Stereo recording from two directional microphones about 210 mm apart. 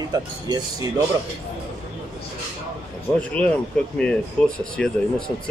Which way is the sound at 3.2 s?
5° left (ahead or behind).